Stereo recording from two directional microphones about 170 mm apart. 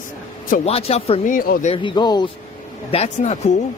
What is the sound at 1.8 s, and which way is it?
Speech, 25° left (ahead or behind).